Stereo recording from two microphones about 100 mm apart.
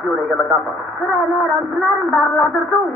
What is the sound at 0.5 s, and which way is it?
Speech, 30° right (ahead or behind).